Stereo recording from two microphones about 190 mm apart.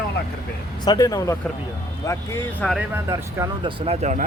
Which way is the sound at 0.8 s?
20° left (ahead or behind).